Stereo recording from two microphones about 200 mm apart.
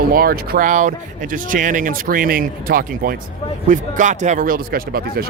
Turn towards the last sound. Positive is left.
turn(degrees=-45)  # may be behind; listen again after turning